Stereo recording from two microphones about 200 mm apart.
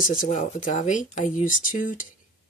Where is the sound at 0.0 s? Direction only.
45° left (ahead or behind).